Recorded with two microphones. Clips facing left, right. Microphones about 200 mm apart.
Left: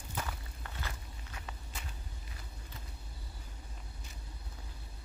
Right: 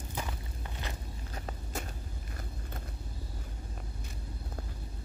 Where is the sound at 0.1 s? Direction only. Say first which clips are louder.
Right 1 dB; 15° right (ahead or behind).